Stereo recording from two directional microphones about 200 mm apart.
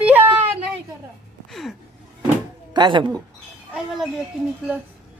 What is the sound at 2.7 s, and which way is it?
Speech, 20° right (ahead or behind).